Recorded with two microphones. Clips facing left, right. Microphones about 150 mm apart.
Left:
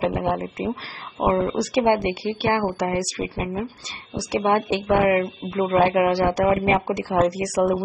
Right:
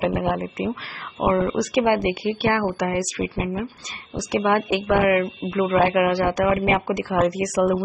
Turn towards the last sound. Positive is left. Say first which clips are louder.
# even
turn(degrees=30)  # may be behind; listen again after turning